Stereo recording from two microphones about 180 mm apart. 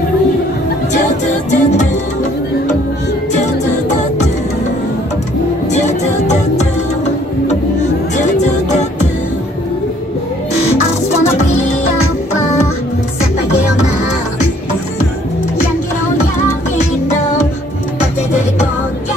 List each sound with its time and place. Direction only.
1.2 s music: 40° left (ahead or behind)
5.7 s music: 40° left (ahead or behind)
8.2 s music: 40° left (ahead or behind)